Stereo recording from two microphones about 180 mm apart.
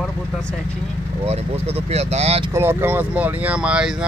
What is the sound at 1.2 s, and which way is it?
Speech, 35° right (ahead or behind).